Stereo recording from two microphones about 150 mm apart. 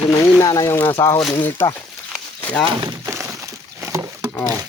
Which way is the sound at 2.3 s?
10° left (ahead or behind).